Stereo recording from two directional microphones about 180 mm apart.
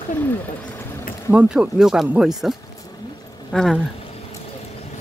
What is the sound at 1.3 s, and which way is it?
Speech, 5° right (ahead or behind).